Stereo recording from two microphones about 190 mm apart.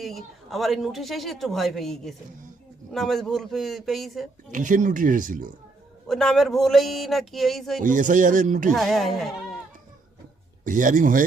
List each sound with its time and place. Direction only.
0.0 s a man's voice: centre (ahead or behind)
4.5 s speech: 40° right (ahead or behind)
6.1 s a man's voice: centre (ahead or behind)
7.8 s speech: 40° right (ahead or behind)
8.7 s a man's voice: centre (ahead or behind)
10.6 s speech: 45° right (ahead or behind)